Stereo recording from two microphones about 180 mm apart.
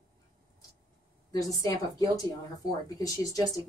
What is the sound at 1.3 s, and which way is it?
A woman's voice, 20° left (ahead or behind).